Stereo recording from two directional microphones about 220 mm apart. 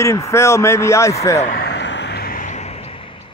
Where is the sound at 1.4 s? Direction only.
45° left (ahead or behind).